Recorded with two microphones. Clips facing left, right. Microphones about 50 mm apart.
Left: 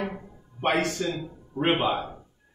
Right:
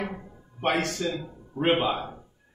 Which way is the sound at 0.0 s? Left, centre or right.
Centre.